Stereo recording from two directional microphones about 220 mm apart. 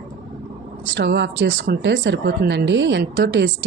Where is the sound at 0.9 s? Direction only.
50° right (ahead or behind).